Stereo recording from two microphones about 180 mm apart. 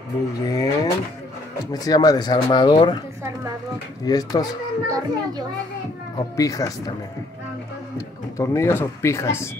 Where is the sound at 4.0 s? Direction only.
20° left (ahead or behind).